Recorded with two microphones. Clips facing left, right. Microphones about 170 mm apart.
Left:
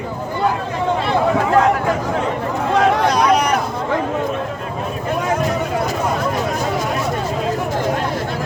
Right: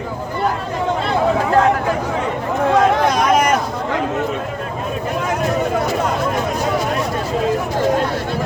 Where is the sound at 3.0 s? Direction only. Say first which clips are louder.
Even; 50° right (ahead or behind).